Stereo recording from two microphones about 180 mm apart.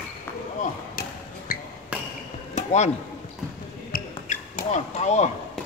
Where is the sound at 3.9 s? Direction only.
50° left (ahead or behind).